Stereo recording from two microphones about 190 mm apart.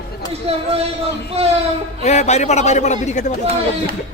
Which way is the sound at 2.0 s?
35° left (ahead or behind).